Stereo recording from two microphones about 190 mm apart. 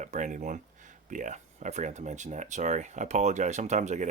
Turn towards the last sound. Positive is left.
turn(degrees=-40)  # may be behind; listen again after turning